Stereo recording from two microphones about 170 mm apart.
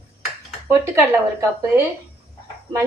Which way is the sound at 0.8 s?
15° right (ahead or behind).